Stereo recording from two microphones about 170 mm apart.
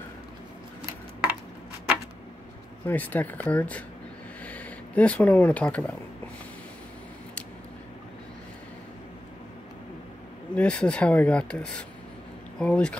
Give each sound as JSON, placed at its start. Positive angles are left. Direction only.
{"t": 2.9, "sound": "speech", "side_deg": 10}
{"t": 10.5, "sound": "speech", "side_deg": 5}